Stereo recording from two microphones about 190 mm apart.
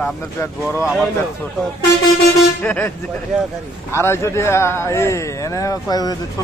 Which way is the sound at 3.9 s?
15° left (ahead or behind).